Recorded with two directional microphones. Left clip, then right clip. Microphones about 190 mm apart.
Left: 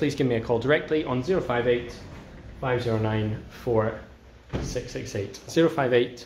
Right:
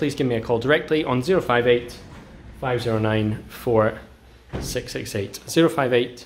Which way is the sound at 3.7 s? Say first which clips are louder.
Right 5 dB; 40° right (ahead or behind).